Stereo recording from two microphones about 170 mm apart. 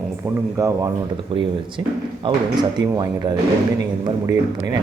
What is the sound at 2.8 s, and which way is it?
Speech, 25° right (ahead or behind).